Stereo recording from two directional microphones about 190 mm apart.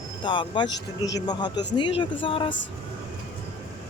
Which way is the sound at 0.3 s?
25° left (ahead or behind).